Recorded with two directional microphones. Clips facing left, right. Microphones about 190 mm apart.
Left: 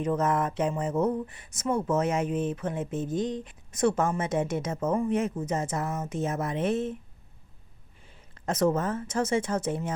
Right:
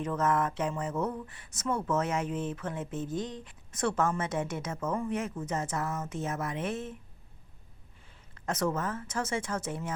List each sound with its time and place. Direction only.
0.0 s speech: 20° left (ahead or behind)
8.4 s speech: 20° left (ahead or behind)